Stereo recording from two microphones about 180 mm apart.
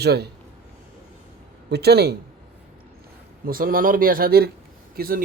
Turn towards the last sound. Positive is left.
turn(degrees=-55)  # may be behind; listen again after turning